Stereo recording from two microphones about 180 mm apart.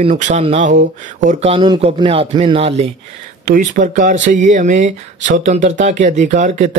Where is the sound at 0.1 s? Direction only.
40° right (ahead or behind).